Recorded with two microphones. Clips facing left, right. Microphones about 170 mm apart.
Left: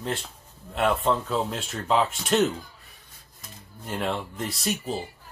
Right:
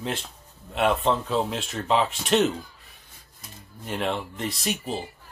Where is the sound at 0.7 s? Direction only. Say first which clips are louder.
Right 1 dB; centre (ahead or behind).